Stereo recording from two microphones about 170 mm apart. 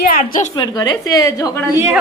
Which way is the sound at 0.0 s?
55° left (ahead or behind).